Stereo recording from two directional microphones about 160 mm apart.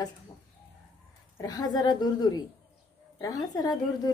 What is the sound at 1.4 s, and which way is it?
A woman's voice, 25° left (ahead or behind).